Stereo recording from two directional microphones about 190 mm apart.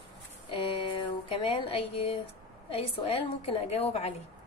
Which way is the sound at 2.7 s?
30° left (ahead or behind).